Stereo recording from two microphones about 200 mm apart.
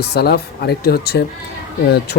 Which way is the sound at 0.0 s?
55° left (ahead or behind).